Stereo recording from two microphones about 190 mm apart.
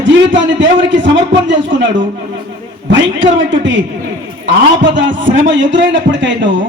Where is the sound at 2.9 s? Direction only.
70° right (ahead or behind).